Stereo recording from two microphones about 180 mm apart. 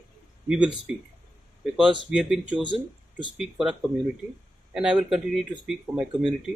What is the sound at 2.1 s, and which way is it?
Speech, 5° right (ahead or behind).